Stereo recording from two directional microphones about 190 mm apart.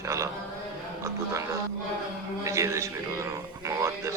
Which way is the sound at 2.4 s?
15° right (ahead or behind).